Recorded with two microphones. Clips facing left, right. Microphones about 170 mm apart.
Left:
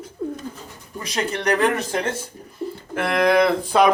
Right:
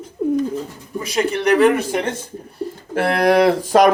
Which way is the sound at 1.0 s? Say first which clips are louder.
Right 6 dB; 5° right (ahead or behind).